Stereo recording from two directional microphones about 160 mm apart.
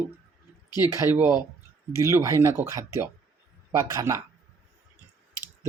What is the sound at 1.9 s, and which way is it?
Speech, 20° right (ahead or behind).